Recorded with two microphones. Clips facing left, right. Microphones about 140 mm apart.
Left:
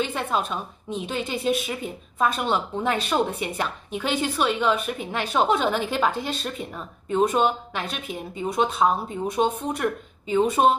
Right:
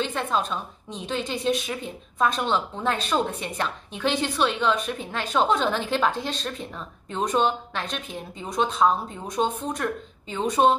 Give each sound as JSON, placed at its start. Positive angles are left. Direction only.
{"t": 0.0, "sound": "a woman's voice", "side_deg": 10}